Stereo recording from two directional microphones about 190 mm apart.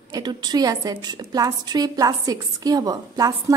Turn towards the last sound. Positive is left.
turn(degrees=-20)  # may be behind; listen again after turning